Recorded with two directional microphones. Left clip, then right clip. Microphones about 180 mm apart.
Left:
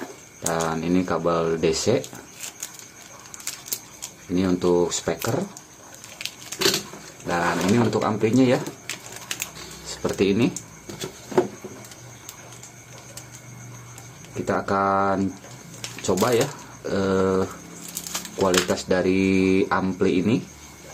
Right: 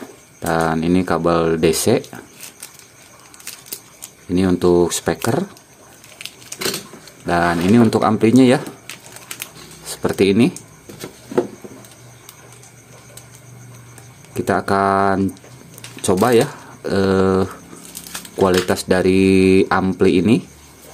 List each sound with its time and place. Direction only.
0.5 s speech: 55° right (ahead or behind)
4.4 s speech: 50° right (ahead or behind)
7.2 s speech: 55° right (ahead or behind)
9.8 s speech: 50° right (ahead or behind)
14.3 s speech: 55° right (ahead or behind)
18.7 s speech: 55° right (ahead or behind)